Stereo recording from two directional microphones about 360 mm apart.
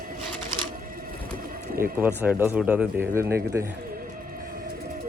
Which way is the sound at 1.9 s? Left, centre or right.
Centre.